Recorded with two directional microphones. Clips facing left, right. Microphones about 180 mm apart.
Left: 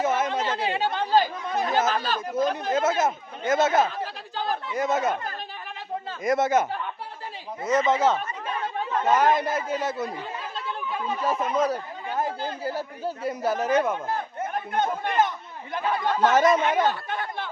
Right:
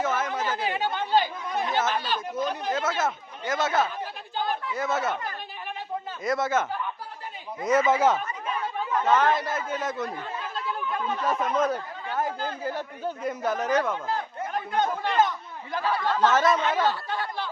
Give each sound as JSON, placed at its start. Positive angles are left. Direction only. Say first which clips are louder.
{"t": 0.1, "sound": "chatter", "louder": "left 3 dB", "side_deg": 25}
{"t": 3.1, "sound": "a man's voice", "louder": "left 5 dB", "side_deg": 25}
{"t": 6.2, "sound": "a man's voice", "louder": "left 4 dB", "side_deg": 20}
{"t": 7.6, "sound": "speech", "louder": "even", "side_deg": -10}
{"t": 8.9, "sound": "a sound", "louder": "even", "side_deg": 25}
{"t": 9.1, "sound": "a man's voice", "louder": "left 3 dB", "side_deg": 15}
{"t": 12.0, "sound": "speech", "louder": "left 1 dB", "side_deg": 15}
{"t": 13.8, "sound": "a sound", "louder": "left 1 dB", "side_deg": 20}
{"t": 15.7, "sound": "a man's voice", "louder": "left 1 dB", "side_deg": 20}
{"t": 16.6, "sound": "chatter", "louder": "left 2 dB", "side_deg": 15}